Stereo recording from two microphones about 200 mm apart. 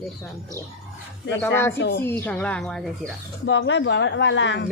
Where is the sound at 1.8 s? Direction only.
55° left (ahead or behind).